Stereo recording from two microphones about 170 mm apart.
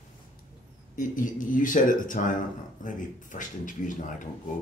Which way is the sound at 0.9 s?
50° left (ahead or behind).